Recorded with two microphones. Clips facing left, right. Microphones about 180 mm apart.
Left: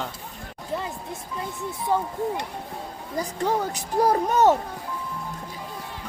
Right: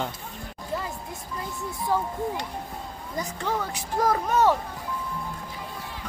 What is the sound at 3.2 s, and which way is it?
Speech, 35° left (ahead or behind).